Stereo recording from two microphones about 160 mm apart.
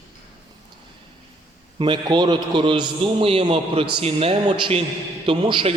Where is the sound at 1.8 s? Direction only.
30° right (ahead or behind).